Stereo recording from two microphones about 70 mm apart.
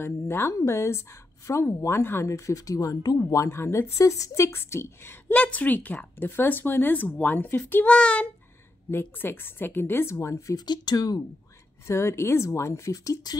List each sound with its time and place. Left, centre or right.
0.3 s a woman's voice: left
3.2 s speech: left
5.3 s speech: centre
7.9 s a child's voice: centre
8.9 s a woman's voice: left
10.6 s speech: left
11.9 s speech: left